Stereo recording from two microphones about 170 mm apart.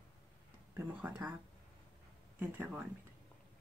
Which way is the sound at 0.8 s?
10° right (ahead or behind).